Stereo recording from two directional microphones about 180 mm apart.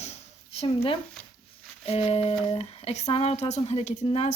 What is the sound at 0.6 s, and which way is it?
A woman's voice, 35° left (ahead or behind).